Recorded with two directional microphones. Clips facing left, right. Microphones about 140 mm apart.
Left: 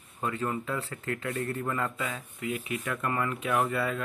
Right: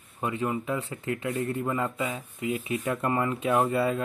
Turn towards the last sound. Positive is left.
turn(degrees=-25)  # may be behind; listen again after turning